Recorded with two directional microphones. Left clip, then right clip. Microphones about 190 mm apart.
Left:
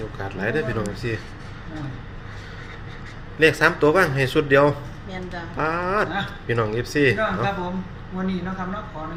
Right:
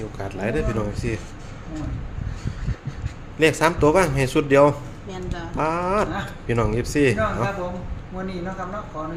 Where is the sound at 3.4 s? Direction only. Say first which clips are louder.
Left 1 dB; 15° right (ahead or behind).